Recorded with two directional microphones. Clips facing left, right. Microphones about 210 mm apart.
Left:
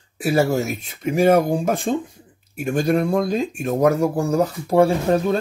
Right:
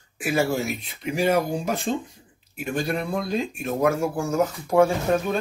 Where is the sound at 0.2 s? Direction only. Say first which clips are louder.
Left 5 dB; 40° left (ahead or behind).